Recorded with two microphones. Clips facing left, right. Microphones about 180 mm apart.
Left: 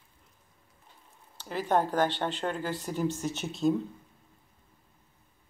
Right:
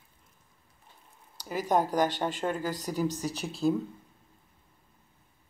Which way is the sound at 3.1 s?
35° right (ahead or behind).